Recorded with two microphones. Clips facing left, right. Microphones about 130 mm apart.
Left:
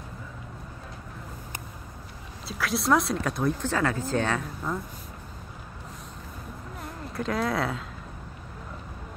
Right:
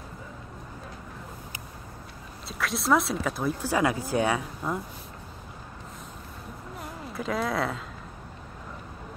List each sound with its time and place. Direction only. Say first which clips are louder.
2.4 s speech: left 2 dB; centre (ahead or behind)
6.8 s speech: left 2 dB; centre (ahead or behind)